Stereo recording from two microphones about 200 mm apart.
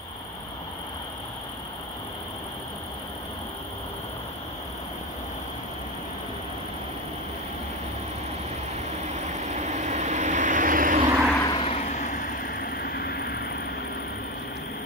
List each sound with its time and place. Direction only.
9.0 s vehicle: 35° right (ahead or behind)
11.3 s vehicle: 25° left (ahead or behind)
11.8 s vehicle: 40° left (ahead or behind)